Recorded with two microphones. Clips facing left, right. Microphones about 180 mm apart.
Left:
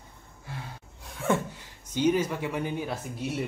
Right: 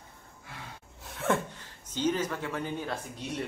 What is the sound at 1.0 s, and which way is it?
Sneeze, centre (ahead or behind).